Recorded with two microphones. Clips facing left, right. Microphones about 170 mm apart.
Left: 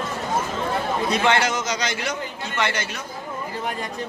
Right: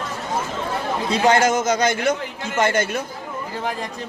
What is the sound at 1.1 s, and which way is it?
A man's voice, 40° right (ahead or behind).